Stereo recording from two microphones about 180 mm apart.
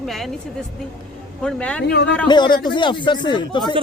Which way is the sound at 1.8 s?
70° left (ahead or behind).